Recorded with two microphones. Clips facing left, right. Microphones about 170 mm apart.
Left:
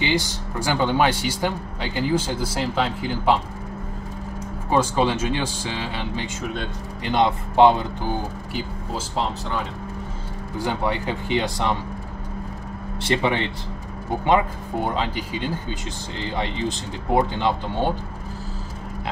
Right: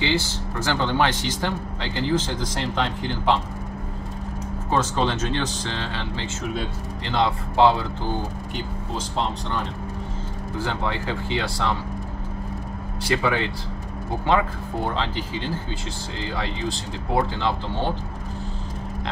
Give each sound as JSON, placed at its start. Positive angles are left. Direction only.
{"t": 0.0, "sound": "speech", "side_deg": 15}
{"t": 4.6, "sound": "speech", "side_deg": 10}
{"t": 6.4, "sound": "speech", "side_deg": -5}
{"t": 7.1, "sound": "speech", "side_deg": 20}
{"t": 10.6, "sound": "speech", "side_deg": 15}
{"t": 13.0, "sound": "speech", "side_deg": 25}